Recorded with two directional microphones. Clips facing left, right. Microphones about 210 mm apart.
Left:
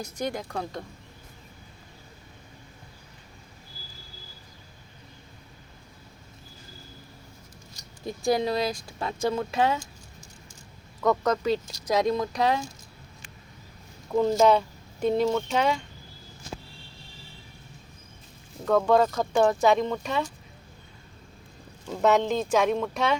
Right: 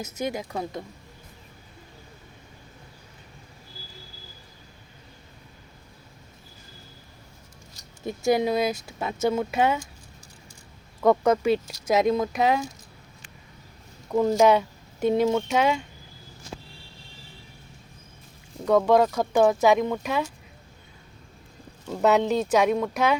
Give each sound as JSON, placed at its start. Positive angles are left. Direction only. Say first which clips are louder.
{"t": 0.0, "sound": "speech", "louder": "right 1 dB", "side_deg": -5}
{"t": 8.0, "sound": "speech", "louder": "right 2 dB", "side_deg": -20}
{"t": 11.1, "sound": "speech", "louder": "right 4 dB", "side_deg": -10}
{"t": 14.2, "sound": "speech", "louder": "right 1 dB", "side_deg": -5}
{"t": 18.6, "sound": "speech", "louder": "right 2 dB", "side_deg": -15}
{"t": 21.8, "sound": "speech", "louder": "right 1 dB", "side_deg": -5}